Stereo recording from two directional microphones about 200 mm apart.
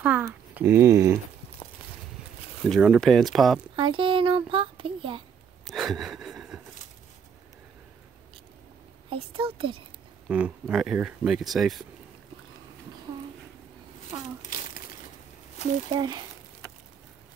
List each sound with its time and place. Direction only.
0.0 s speech: 5° right (ahead or behind)
2.7 s speech: centre (ahead or behind)
3.7 s speech: 25° right (ahead or behind)
5.7 s a sound: centre (ahead or behind)
9.1 s speech: 25° right (ahead or behind)
10.2 s speech: 5° right (ahead or behind)
14.4 s crumpling: 40° left (ahead or behind)
15.9 s speech: 20° right (ahead or behind)